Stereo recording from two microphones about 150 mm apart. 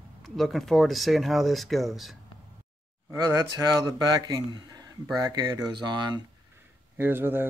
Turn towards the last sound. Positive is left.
turn(degrees=-15)  # may be behind; listen again after turning